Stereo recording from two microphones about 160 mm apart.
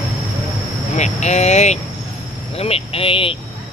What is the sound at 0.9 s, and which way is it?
Vehicle, 45° left (ahead or behind).